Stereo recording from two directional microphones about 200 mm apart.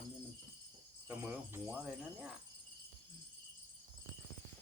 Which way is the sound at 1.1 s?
10° right (ahead or behind).